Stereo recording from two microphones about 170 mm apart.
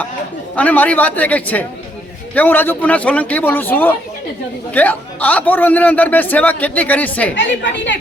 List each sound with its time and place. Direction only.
0.5 s a man's voice: 10° left (ahead or behind)
7.3 s a woman's voice: 90° left